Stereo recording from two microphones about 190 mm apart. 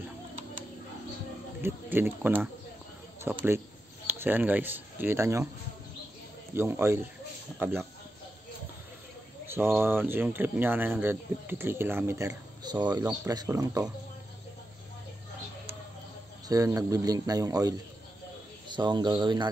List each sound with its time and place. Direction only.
1.6 s speech: 10° right (ahead or behind)
6.5 s speech: 10° right (ahead or behind)
9.5 s speech: 10° right (ahead or behind)
16.4 s speech: 20° right (ahead or behind)